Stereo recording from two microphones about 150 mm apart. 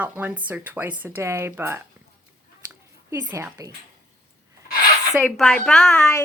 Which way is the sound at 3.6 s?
25° right (ahead or behind).